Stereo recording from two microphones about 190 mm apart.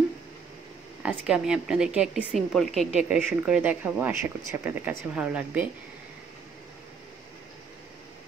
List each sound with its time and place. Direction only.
1.0 s a woman's voice: 5° right (ahead or behind)